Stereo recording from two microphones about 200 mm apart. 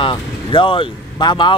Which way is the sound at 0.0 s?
25° left (ahead or behind).